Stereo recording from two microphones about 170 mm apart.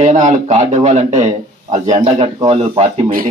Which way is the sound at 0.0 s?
45° right (ahead or behind).